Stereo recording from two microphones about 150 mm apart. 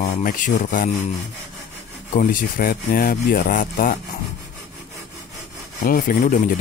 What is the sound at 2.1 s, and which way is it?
Speech, 65° left (ahead or behind).